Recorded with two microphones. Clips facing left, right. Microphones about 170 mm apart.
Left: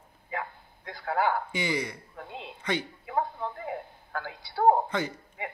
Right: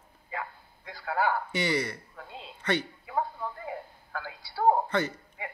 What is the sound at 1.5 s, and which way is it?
A woman's voice, 10° left (ahead or behind).